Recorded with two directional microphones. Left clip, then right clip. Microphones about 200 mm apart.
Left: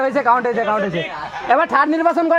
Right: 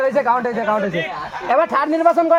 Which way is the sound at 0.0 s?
45° left (ahead or behind).